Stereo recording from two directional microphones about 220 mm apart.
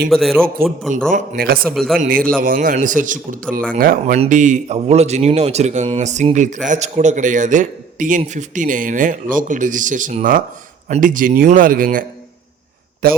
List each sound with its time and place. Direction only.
0.1 s a man's voice: centre (ahead or behind)
1.1 s speech: 40° right (ahead or behind)
1.7 s a man's voice: centre (ahead or behind)
2.0 s speech: 40° right (ahead or behind)